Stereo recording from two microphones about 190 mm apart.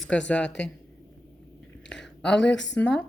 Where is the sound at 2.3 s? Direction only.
70° left (ahead or behind).